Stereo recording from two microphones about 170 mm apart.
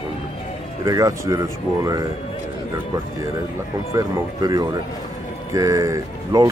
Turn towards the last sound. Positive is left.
turn(degrees=-20)  # may be behind; listen again after turning